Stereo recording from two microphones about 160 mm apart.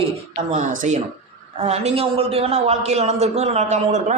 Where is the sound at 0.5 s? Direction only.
50° right (ahead or behind).